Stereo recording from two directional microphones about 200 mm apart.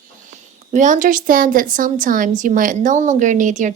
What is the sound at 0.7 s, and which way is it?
A woman's voice, 40° right (ahead or behind).